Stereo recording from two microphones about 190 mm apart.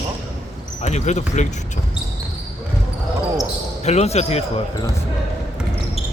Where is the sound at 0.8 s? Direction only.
35° left (ahead or behind).